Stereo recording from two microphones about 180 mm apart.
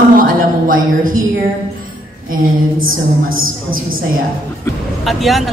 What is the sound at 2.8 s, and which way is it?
A woman's voice, 50° right (ahead or behind).